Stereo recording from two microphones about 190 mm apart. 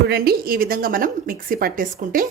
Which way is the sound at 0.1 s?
50° right (ahead or behind).